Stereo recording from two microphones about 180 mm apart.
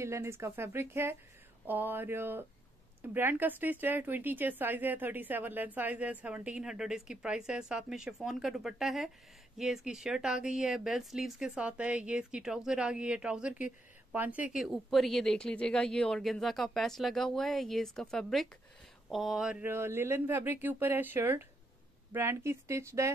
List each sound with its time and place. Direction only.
0.0 s speech: 15° right (ahead or behind)